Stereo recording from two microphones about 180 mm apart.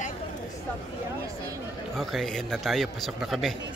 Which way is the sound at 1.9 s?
Centre (ahead or behind).